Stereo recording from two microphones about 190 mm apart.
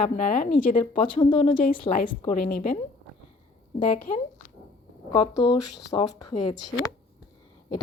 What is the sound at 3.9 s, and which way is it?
Speech, 40° left (ahead or behind).